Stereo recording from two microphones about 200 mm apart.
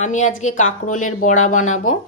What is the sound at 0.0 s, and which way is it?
Speech, 35° left (ahead or behind).